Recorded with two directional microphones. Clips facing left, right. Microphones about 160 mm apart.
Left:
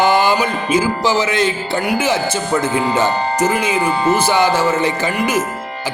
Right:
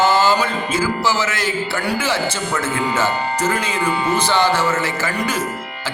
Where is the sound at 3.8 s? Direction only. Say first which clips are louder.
Left 4 dB; 30° left (ahead or behind).